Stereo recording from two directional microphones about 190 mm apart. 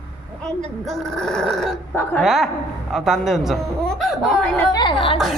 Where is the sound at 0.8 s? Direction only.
Centre (ahead or behind).